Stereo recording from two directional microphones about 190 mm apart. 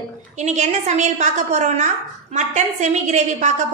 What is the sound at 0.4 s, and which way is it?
A woman's voice, 40° right (ahead or behind).